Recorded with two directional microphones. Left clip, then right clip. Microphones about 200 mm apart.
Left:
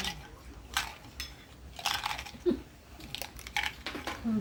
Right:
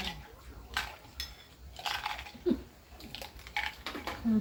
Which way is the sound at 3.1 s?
35° left (ahead or behind).